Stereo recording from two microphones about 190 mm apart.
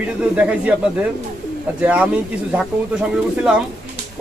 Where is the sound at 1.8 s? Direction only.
5° right (ahead or behind).